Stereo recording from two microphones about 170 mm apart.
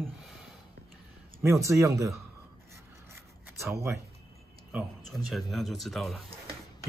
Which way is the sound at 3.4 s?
15° right (ahead or behind).